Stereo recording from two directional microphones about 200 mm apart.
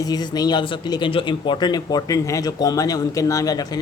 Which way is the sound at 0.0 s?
20° left (ahead or behind).